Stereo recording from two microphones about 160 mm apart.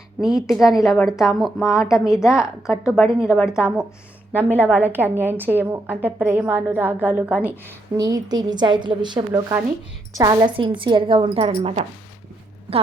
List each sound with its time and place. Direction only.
0.2 s a woman's voice: 5° right (ahead or behind)
7.9 s a woman's voice: 25° right (ahead or behind); by 11.9 s 40° right (ahead or behind)